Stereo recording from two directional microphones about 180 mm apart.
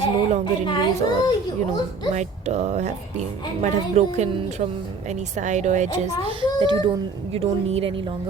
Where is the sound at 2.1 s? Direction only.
40° right (ahead or behind).